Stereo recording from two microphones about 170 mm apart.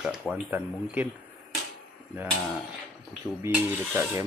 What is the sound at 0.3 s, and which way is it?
Speech, 10° right (ahead or behind).